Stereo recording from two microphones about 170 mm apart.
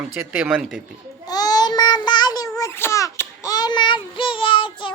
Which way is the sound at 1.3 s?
25° left (ahead or behind).